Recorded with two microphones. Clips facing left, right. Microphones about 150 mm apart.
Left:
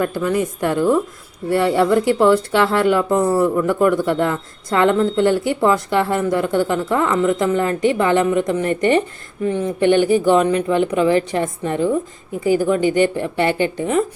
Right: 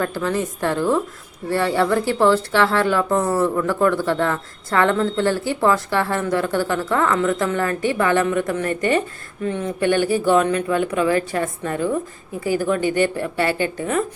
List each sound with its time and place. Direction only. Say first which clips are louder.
0.0 s speech: left 3 dB; 15° left (ahead or behind)